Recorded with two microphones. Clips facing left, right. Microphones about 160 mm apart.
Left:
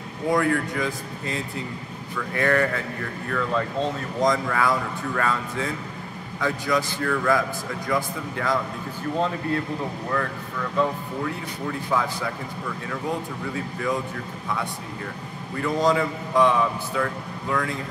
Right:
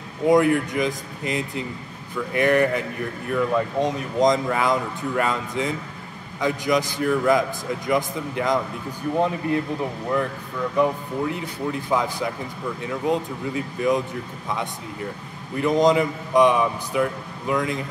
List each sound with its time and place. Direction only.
0.3 s speech: 20° right (ahead or behind)
10.8 s speech: 20° right (ahead or behind)
15.5 s speech: 20° right (ahead or behind)